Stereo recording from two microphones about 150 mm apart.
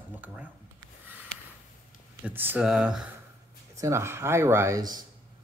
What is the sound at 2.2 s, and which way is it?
Speech, 10° right (ahead or behind).